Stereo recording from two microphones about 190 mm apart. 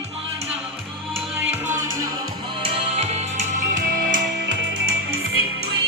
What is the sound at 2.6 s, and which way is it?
Music, 30° right (ahead or behind).